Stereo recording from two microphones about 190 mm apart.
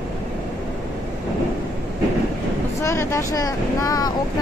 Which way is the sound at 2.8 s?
15° left (ahead or behind).